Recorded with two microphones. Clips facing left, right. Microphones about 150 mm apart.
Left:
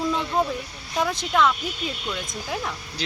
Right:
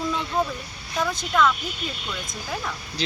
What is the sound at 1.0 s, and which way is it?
Speech, 20° left (ahead or behind).